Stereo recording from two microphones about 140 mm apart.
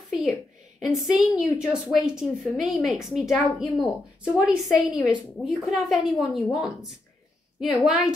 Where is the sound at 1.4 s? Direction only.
5° right (ahead or behind).